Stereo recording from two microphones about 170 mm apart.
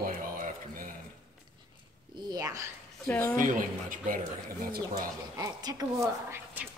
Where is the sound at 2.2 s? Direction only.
20° right (ahead or behind).